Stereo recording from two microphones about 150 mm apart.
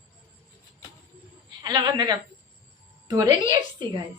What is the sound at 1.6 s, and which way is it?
A woman's voice, 30° right (ahead or behind).